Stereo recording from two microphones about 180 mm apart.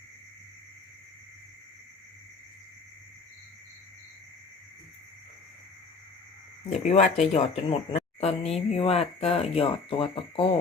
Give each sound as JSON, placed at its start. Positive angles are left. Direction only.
{"t": 6.7, "sound": "speech", "side_deg": 35}